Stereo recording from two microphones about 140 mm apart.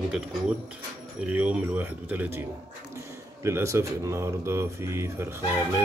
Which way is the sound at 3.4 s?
20° right (ahead or behind).